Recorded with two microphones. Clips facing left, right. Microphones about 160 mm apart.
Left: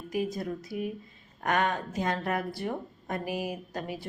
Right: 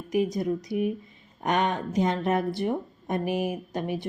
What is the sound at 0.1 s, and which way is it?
A woman's voice, 20° right (ahead or behind).